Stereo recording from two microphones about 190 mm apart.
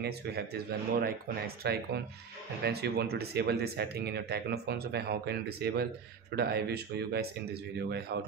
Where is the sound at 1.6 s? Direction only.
60° right (ahead or behind).